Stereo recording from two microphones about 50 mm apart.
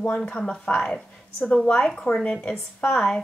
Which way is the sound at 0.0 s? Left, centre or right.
Left.